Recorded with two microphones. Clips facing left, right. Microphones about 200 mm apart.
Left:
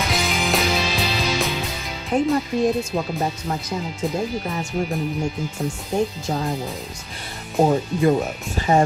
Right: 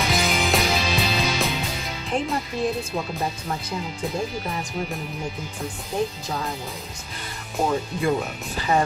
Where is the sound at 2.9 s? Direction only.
40° left (ahead or behind).